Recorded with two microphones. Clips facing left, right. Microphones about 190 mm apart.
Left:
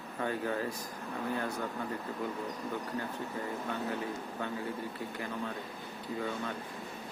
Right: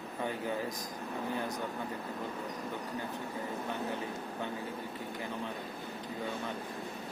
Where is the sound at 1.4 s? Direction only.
15° right (ahead or behind).